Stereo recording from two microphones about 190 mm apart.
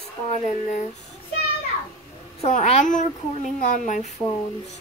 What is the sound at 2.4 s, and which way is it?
A woman's voice, 35° left (ahead or behind).